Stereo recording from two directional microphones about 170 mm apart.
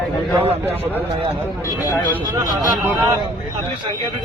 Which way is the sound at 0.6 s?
10° right (ahead or behind).